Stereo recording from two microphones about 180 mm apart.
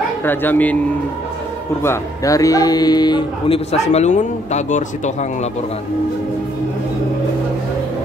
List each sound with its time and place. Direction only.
0.2 s speech: 10° left (ahead or behind)
1.8 s speech: 15° left (ahead or behind); by 5.5 s 40° left (ahead or behind)